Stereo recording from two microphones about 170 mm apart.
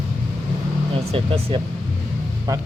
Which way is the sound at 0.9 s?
35° right (ahead or behind).